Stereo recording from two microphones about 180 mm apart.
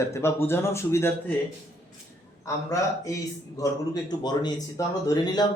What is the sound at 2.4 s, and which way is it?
Speech, 15° left (ahead or behind).